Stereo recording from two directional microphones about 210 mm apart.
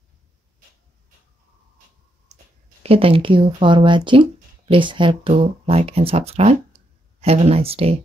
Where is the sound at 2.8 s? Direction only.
25° right (ahead or behind).